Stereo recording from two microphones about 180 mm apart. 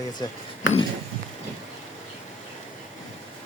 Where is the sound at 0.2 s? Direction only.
20° left (ahead or behind).